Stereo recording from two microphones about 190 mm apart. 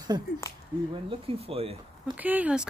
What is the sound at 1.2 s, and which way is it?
Speech, 30° right (ahead or behind).